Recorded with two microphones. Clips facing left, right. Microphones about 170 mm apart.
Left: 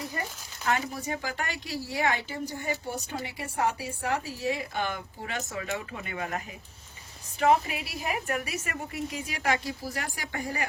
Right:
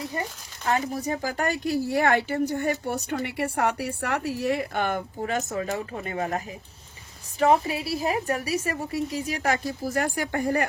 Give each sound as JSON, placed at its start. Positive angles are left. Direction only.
{"t": 0.1, "sound": "a woman's voice", "side_deg": -30}